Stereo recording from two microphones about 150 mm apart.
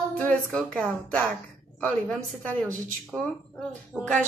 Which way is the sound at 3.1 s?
5° left (ahead or behind).